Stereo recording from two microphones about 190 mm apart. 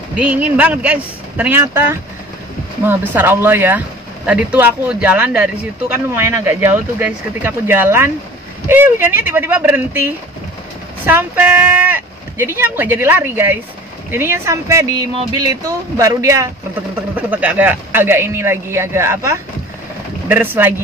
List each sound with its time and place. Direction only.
0.1 s speech: 5° right (ahead or behind)